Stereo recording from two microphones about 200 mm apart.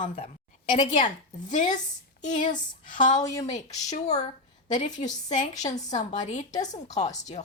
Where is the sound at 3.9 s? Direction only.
35° left (ahead or behind).